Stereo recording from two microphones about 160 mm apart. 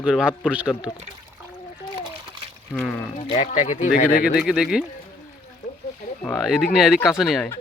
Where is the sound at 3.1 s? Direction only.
45° left (ahead or behind); by 4.3 s 65° left (ahead or behind).